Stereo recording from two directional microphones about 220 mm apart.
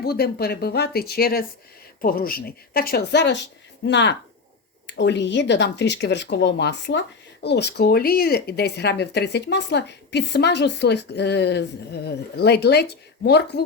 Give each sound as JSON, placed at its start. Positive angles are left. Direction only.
{"t": 0.0, "sound": "speech", "side_deg": 45}